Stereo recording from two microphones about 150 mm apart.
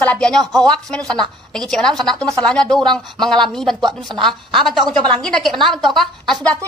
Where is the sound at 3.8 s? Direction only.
30° right (ahead or behind).